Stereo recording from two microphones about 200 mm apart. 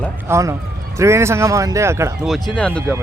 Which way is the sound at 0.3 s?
15° right (ahead or behind).